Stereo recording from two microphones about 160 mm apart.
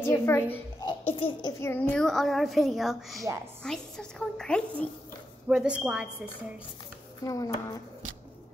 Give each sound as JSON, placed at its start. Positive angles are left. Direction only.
{"t": 0.0, "sound": "a woman's voice", "side_deg": 15}
{"t": 0.8, "sound": "a child's voice", "side_deg": 35}
{"t": 1.6, "sound": "a woman's voice", "side_deg": 15}
{"t": 5.5, "sound": "a woman's voice", "side_deg": -5}
{"t": 7.2, "sound": "speech", "side_deg": 20}